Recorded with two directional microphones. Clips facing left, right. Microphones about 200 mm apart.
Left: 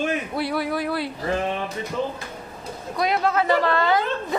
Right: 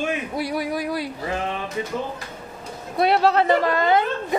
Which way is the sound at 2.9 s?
30° right (ahead or behind).